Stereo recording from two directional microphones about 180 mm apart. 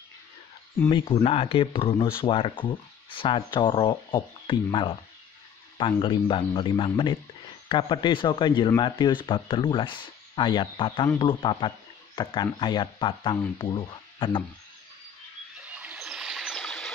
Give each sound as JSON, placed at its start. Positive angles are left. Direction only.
{"t": 0.8, "sound": "speech", "side_deg": 30}
{"t": 15.6, "sound": "trickle", "side_deg": -5}